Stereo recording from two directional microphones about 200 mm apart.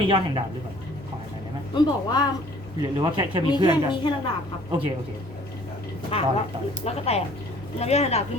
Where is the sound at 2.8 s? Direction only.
20° right (ahead or behind).